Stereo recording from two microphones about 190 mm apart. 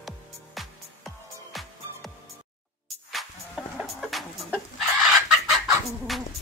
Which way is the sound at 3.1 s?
Centre (ahead or behind).